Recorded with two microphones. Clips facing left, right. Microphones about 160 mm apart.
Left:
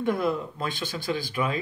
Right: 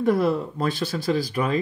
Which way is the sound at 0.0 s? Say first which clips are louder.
Right 5 dB; 40° right (ahead or behind).